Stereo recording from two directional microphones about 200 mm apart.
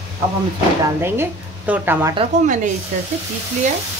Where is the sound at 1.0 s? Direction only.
10° right (ahead or behind).